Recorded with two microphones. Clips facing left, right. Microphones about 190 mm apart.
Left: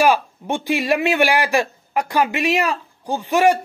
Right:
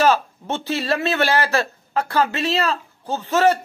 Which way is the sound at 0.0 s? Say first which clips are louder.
Left 1 dB; 15° left (ahead or behind).